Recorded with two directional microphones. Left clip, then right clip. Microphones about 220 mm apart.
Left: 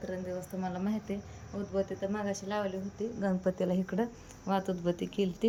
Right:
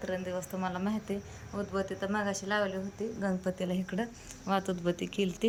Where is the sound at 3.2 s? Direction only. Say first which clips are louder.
Left 3 dB; 15° left (ahead or behind).